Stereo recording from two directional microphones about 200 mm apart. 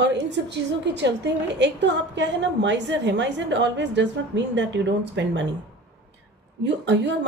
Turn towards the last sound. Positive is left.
turn(degrees=-60)  # may be behind; listen again after turning